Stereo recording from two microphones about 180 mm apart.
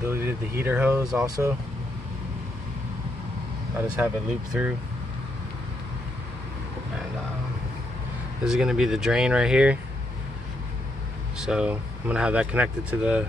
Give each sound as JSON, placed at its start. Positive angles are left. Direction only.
{"t": 0.0, "sound": "speech", "side_deg": -10}
{"t": 3.8, "sound": "speech", "side_deg": -5}
{"t": 8.5, "sound": "speech", "side_deg": -5}
{"t": 11.4, "sound": "speech", "side_deg": -5}